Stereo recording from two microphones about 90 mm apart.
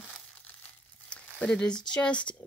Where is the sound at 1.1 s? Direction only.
10° left (ahead or behind).